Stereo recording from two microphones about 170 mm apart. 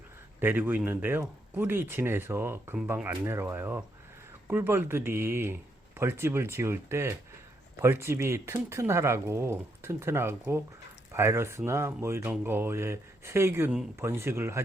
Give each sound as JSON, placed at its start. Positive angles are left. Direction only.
{"t": 0.3, "sound": "speech", "side_deg": -10}